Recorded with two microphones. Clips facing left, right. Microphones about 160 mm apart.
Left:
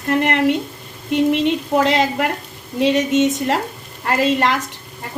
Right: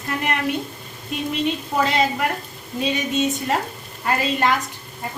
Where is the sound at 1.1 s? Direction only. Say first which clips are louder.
Left 8 dB; 85° left.